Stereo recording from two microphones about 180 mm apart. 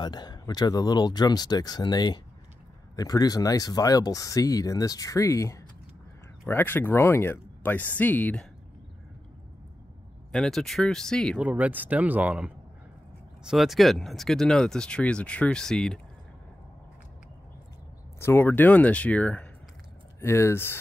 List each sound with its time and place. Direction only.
0.0 s speech: 25° left (ahead or behind)
10.3 s speech: 5° left (ahead or behind)
11.4 s speech: 10° right (ahead or behind)
18.2 s speech: 10° left (ahead or behind)